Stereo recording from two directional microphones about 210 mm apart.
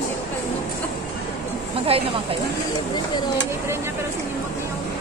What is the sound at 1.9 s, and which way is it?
Speech, 25° right (ahead or behind).